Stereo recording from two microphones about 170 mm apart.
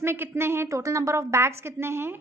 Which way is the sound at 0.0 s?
15° right (ahead or behind).